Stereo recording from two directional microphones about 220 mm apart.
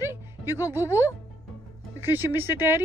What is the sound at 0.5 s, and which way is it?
Speech, 15° left (ahead or behind).